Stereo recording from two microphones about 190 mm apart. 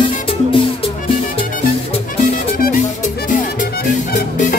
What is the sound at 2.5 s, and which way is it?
Music, 50° left (ahead or behind).